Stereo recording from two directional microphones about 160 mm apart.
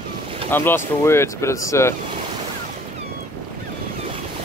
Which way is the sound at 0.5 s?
15° left (ahead or behind).